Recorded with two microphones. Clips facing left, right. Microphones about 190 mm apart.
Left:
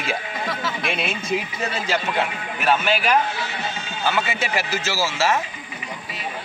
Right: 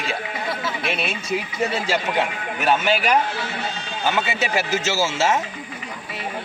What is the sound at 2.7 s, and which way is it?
Speech, 20° right (ahead or behind).